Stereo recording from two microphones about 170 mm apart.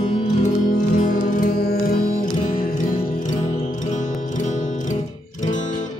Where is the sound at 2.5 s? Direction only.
50° left (ahead or behind).